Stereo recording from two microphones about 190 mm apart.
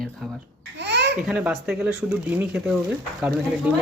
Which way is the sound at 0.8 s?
65° right (ahead or behind).